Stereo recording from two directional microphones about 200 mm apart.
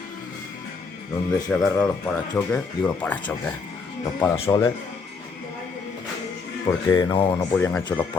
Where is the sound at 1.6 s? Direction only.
5° left (ahead or behind).